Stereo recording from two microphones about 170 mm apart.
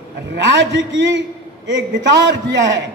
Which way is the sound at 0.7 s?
90° right.